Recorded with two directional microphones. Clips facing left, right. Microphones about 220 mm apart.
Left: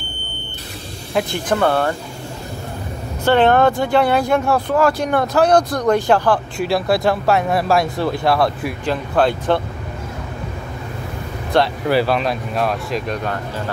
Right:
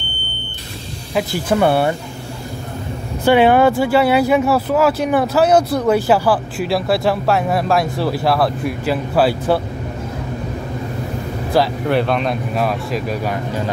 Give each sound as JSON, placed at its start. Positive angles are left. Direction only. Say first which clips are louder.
{"t": 1.1, "sound": "speech", "louder": "right 2 dB", "side_deg": -10}
{"t": 3.3, "sound": "speech", "louder": "right 2 dB", "side_deg": -10}
{"t": 11.5, "sound": "speech", "louder": "even", "side_deg": 0}